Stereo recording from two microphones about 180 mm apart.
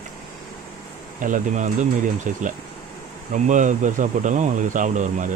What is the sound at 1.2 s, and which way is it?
Speech, 45° right (ahead or behind).